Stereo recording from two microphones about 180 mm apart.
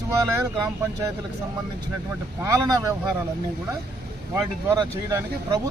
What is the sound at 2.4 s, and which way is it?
Speech, 15° right (ahead or behind).